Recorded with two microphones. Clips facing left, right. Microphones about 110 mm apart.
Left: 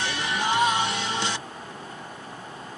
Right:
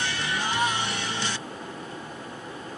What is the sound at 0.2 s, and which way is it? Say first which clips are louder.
Music: left 5 dB; 20° left (ahead or behind).